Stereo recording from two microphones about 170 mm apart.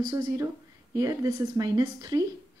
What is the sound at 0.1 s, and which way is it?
Speech, 25° right (ahead or behind).